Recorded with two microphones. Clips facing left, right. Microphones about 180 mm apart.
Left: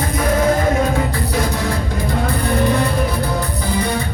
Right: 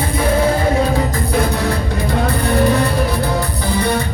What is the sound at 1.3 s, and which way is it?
Music, 55° right (ahead or behind).